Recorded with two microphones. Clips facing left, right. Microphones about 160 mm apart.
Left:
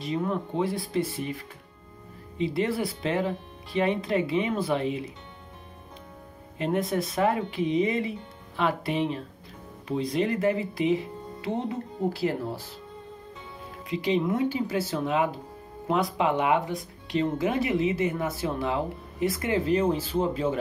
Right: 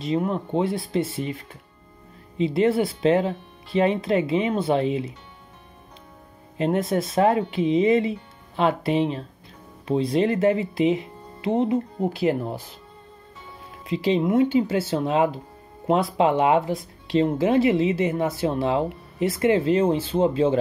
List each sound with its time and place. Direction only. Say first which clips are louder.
0.0 s speech: right 4 dB; 20° right (ahead or behind)
2.3 s speech: right 7 dB; 25° right (ahead or behind)
6.6 s speech: right 4 dB; 25° right (ahead or behind)
13.8 s speech: right 4 dB; 25° right (ahead or behind)